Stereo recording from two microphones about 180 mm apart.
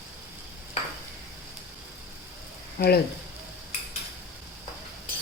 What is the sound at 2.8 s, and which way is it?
Speech, 60° left (ahead or behind).